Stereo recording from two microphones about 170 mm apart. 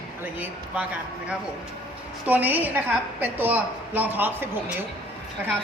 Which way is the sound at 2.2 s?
10° right (ahead or behind).